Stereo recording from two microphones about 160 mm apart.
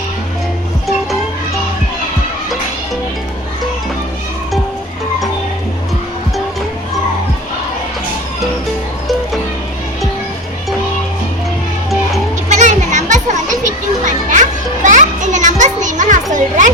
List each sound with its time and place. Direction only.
12.5 s children playing: 45° right (ahead or behind)